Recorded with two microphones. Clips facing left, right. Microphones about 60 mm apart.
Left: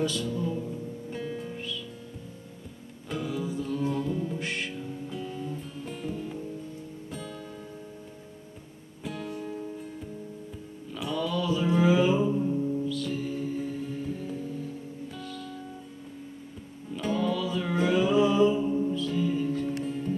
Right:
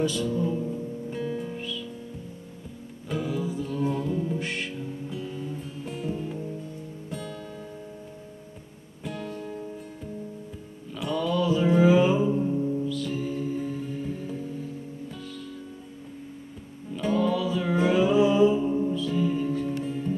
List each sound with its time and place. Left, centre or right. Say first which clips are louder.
0.0 s music: right 3 dB; centre
0.3 s music: right 4 dB; centre
1.1 s music: right 3 dB; centre
3.1 s music: right 2 dB; centre
6.1 s music: right 2 dB; centre
7.1 s music: right 4 dB; centre
9.0 s music: right 1 dB; centre
11.0 s music: right 4 dB; centre
16.9 s music: right 3 dB; centre
18.9 s music: right 2 dB; centre